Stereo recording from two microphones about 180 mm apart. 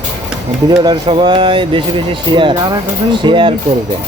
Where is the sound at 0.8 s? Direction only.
25° right (ahead or behind).